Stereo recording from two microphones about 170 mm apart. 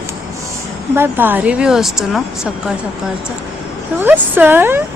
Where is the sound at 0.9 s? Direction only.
15° right (ahead or behind).